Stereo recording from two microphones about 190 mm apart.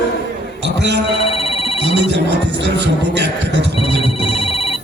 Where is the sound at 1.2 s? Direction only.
30° left (ahead or behind).